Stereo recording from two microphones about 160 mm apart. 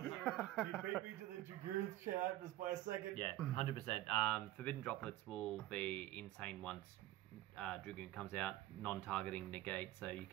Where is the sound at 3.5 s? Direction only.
40° left (ahead or behind).